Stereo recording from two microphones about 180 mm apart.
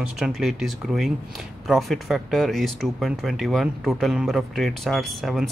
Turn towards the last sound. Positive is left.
turn(degrees=0)  # may be behind; listen again after turning